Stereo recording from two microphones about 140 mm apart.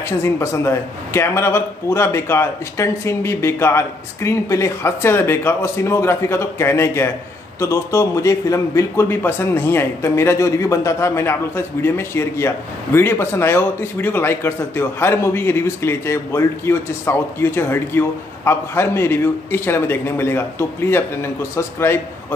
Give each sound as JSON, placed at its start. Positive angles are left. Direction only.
{"t": 0.2, "sound": "a man's voice", "side_deg": 20}